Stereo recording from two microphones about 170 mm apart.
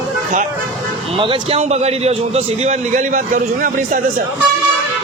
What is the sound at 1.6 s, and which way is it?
A man's voice, 40° right (ahead or behind).